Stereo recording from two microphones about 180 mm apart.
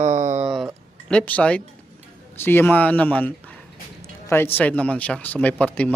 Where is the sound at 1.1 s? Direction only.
5° left (ahead or behind).